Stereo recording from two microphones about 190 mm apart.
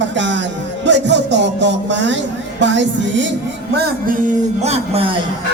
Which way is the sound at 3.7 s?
55° right (ahead or behind).